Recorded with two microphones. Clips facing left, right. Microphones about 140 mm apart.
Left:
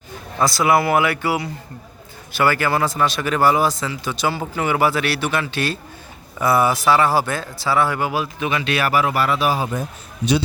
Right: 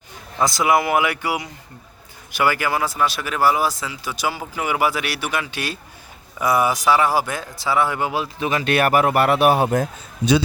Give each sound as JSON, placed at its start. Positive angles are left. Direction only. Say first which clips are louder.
{"t": 0.4, "sound": "speech", "louder": "left 1 dB", "side_deg": -15}
{"t": 8.4, "sound": "speech", "louder": "right 4 dB", "side_deg": -45}